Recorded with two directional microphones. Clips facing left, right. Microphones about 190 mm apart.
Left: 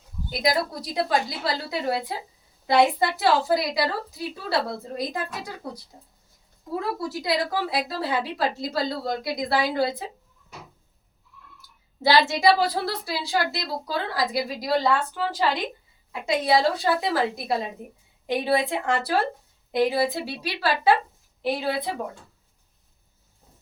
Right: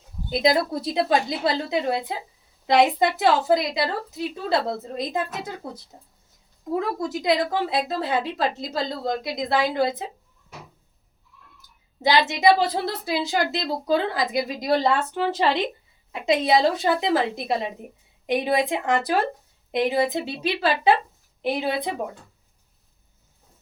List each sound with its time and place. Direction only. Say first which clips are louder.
0.3 s a woman's voice: right 4 dB; 25° right (ahead or behind)
6.7 s a woman's voice: right 2 dB; 20° right (ahead or behind)
12.4 s a woman's voice: right 2 dB; 20° right (ahead or behind)